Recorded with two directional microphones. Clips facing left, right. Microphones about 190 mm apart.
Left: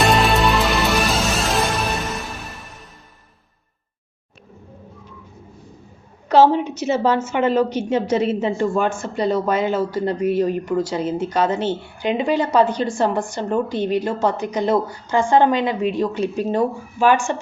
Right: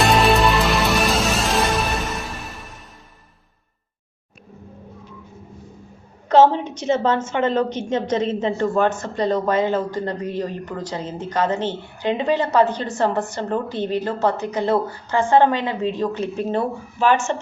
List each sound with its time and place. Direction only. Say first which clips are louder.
0.0 s music: right 1 dB; centre (ahead or behind)
6.5 s a woman's voice: left 2 dB; 10° left (ahead or behind)